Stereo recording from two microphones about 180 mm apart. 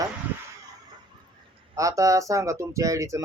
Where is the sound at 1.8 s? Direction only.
20° right (ahead or behind).